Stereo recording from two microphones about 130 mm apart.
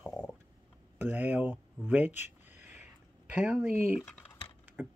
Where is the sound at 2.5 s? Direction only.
15° right (ahead or behind).